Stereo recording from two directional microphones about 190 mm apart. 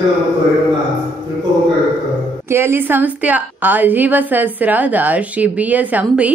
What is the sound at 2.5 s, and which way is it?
A woman's voice, 10° right (ahead or behind).